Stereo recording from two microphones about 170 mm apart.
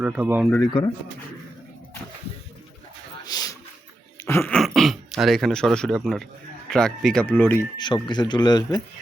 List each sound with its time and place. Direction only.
0.0 s speech: 10° right (ahead or behind)
3.2 s a sound: 25° left (ahead or behind)
4.3 s throat clearing: 15° left (ahead or behind)
4.5 s speech: centre (ahead or behind)
7.8 s speech: 25° left (ahead or behind)